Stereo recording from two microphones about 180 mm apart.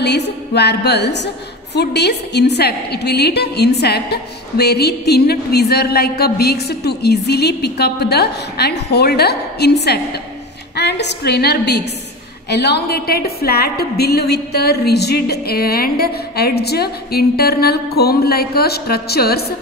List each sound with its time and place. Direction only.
0.0 s a woman's voice: 70° left (ahead or behind)